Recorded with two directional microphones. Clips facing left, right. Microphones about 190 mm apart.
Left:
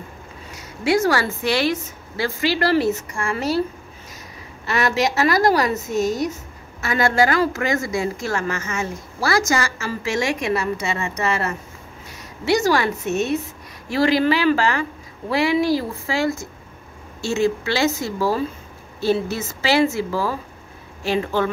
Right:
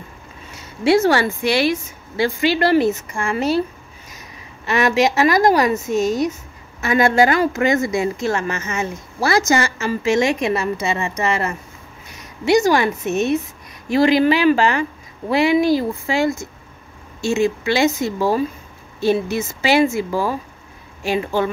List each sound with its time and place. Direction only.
0.6 s speech: 25° right (ahead or behind)
4.6 s speech: 20° right (ahead or behind)